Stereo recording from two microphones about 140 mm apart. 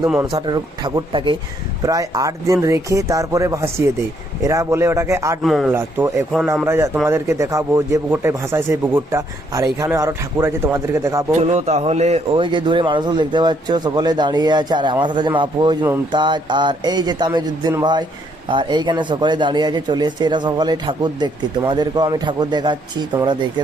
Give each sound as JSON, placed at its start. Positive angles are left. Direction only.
{"t": 0.3, "sound": "speech", "side_deg": -30}
{"t": 1.8, "sound": "a man's voice", "side_deg": -25}
{"t": 5.4, "sound": "speech", "side_deg": 0}
{"t": 5.6, "sound": "a man's voice", "side_deg": -15}
{"t": 11.3, "sound": "a man's voice", "side_deg": -50}
{"t": 12.4, "sound": "speech", "side_deg": -35}